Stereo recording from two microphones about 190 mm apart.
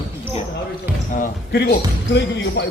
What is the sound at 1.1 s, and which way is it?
Speech, 45° left (ahead or behind).